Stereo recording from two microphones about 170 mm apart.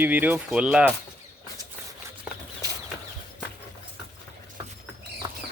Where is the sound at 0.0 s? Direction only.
10° right (ahead or behind).